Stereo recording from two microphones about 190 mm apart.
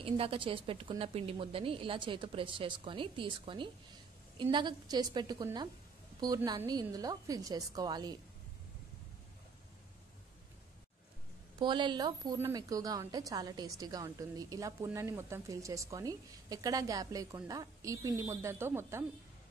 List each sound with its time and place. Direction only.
0.0 s a woman's voice: 30° right (ahead or behind)
11.6 s a woman's voice: 25° right (ahead or behind)